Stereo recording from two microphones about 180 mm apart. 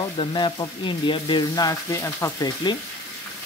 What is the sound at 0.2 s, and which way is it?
Speech, 25° left (ahead or behind).